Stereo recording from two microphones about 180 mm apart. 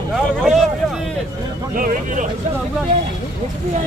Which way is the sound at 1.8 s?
50° right (ahead or behind).